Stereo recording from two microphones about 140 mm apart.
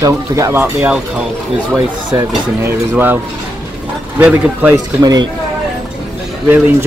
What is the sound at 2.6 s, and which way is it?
Speech, 15° right (ahead or behind).